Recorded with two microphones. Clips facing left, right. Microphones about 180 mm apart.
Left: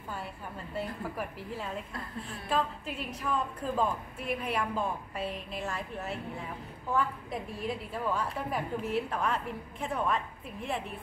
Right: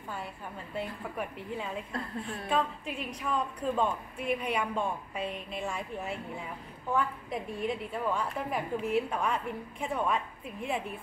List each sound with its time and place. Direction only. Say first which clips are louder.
0.7 s a woman's voice: even; centre (ahead or behind)